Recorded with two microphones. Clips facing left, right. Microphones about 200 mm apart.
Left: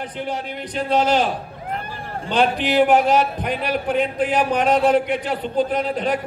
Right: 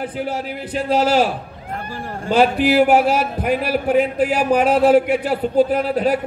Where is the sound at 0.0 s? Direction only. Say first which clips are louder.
Right 3 dB; 5° right (ahead or behind).